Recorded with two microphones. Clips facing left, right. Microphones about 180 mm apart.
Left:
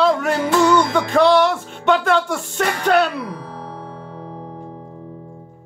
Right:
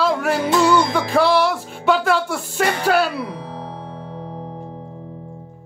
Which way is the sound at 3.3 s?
20° right (ahead or behind).